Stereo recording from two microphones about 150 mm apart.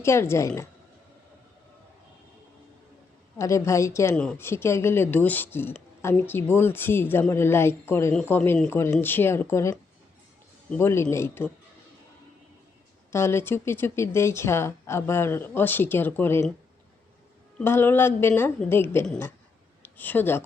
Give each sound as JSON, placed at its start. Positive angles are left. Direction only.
{"t": 0.0, "sound": "speech", "side_deg": 20}
{"t": 3.3, "sound": "a woman's voice", "side_deg": 20}
{"t": 4.1, "sound": "speech", "side_deg": 5}
{"t": 13.1, "sound": "speech", "side_deg": 15}
{"t": 17.6, "sound": "speech", "side_deg": 15}